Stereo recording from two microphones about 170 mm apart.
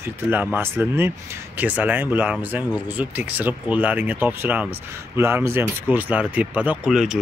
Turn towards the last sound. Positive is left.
turn(degrees=-5)  # may be behind; listen again after turning